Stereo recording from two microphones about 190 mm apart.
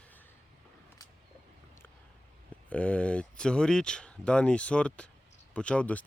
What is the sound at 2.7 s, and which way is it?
Speech, 5° left (ahead or behind).